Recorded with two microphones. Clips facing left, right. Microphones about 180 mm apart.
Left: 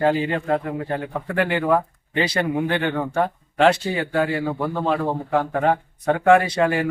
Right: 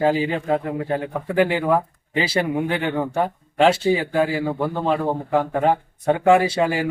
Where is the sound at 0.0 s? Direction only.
5° right (ahead or behind).